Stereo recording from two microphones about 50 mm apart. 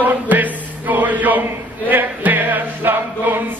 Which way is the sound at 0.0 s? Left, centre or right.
Right.